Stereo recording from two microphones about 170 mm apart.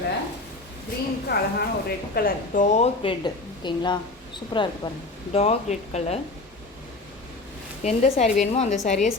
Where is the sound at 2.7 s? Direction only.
40° left (ahead or behind).